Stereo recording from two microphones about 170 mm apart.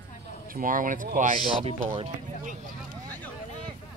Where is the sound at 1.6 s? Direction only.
35° right (ahead or behind).